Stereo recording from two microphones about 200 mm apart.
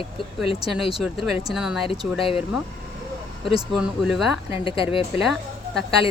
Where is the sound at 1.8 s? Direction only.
25° left (ahead or behind).